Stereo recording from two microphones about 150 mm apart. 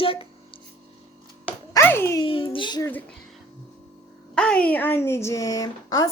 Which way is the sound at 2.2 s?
35° left (ahead or behind).